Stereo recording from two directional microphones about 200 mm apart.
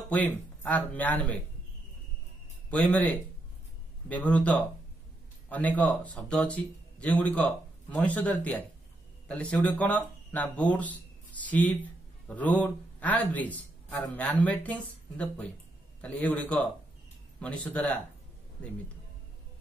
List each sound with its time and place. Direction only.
0.1 s a man's voice: 5° left (ahead or behind)
2.9 s a man's voice: 5° left (ahead or behind)
9.4 s a man's voice: 5° left (ahead or behind)